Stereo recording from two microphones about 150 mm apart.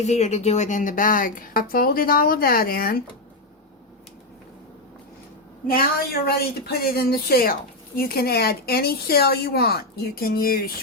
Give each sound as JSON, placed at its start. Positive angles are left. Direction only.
{"t": 0.0, "sound": "a woman's voice", "side_deg": 50}
{"t": 5.6, "sound": "speech", "side_deg": 75}